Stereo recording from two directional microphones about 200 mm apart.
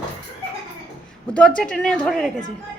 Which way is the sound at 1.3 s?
5° left (ahead or behind).